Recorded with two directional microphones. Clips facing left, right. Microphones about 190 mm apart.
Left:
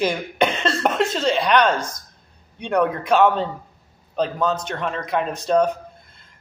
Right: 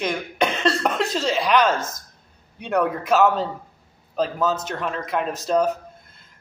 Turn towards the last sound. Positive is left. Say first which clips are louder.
# left 2 dB
turn(degrees=-5)  # may be behind; listen again after turning